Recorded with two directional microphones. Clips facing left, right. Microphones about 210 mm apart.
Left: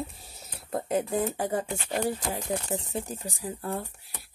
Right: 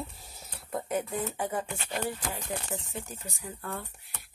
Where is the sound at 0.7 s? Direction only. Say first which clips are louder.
Left 4 dB; 30° left (ahead or behind).